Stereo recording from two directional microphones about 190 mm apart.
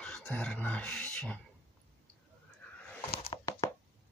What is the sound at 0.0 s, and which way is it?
Speech, 10° left (ahead or behind).